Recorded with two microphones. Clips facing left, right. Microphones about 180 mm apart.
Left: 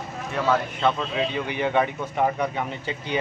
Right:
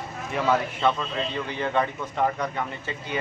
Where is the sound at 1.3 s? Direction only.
15° left (ahead or behind).